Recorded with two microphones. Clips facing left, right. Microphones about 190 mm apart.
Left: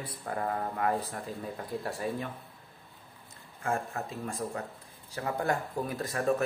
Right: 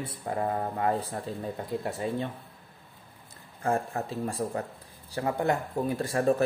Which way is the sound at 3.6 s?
35° right (ahead or behind).